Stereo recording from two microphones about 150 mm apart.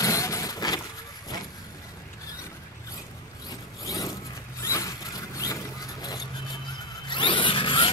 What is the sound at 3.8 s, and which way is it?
Zipper, 20° left (ahead or behind).